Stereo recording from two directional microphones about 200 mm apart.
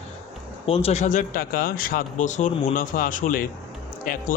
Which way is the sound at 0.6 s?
30° left (ahead or behind).